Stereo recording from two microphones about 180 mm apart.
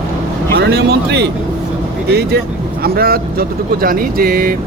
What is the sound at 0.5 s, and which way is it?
Speech, 65° right (ahead or behind).